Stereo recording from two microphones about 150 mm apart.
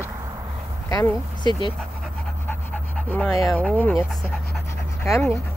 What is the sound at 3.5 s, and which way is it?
Speech, 5° left (ahead or behind).